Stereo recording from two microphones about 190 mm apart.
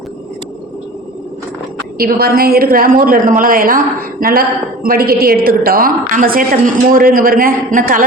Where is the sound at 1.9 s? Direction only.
55° right (ahead or behind).